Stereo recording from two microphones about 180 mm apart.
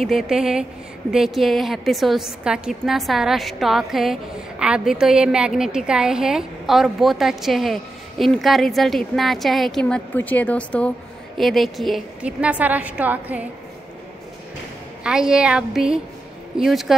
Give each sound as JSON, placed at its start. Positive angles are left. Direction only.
{"t": 0.0, "sound": "a woman's voice", "side_deg": 0}
{"t": 15.0, "sound": "a woman's voice", "side_deg": -5}